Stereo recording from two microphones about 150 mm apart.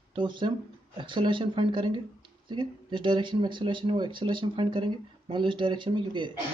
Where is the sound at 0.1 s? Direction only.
30° right (ahead or behind).